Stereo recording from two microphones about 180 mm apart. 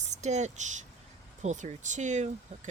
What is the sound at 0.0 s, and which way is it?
Speech, 40° right (ahead or behind).